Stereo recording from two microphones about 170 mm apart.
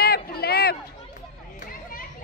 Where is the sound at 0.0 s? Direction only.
65° left (ahead or behind).